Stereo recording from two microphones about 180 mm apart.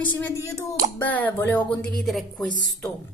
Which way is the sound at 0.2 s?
15° left (ahead or behind).